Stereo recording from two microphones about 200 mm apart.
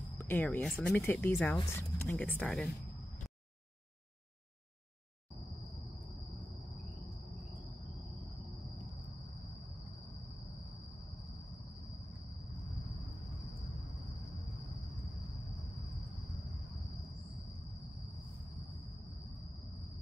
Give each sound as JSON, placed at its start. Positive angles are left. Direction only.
{"t": 0.2, "sound": "speech", "side_deg": 10}